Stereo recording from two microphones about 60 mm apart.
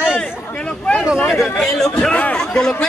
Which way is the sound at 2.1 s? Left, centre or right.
Left.